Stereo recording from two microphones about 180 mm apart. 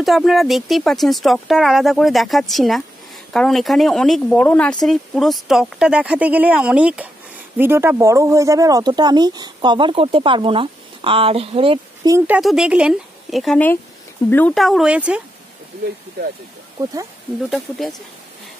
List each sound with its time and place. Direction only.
0.0 s speech: centre (ahead or behind); by 12.1 s 30° right (ahead or behind)
12.4 s speech: 5° right (ahead or behind)
17.5 s speech: centre (ahead or behind)